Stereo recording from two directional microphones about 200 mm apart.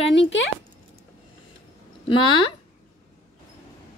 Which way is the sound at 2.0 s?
25° left (ahead or behind).